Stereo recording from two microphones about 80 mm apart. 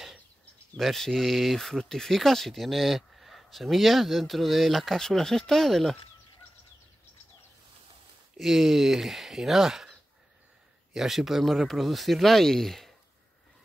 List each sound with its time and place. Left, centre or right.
0.7 s speech: centre
8.4 s speech: centre